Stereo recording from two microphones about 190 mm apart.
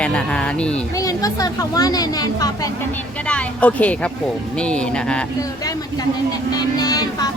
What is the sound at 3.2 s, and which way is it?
Speech, 5° left (ahead or behind).